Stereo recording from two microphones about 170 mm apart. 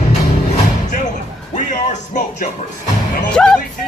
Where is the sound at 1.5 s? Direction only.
45° left (ahead or behind).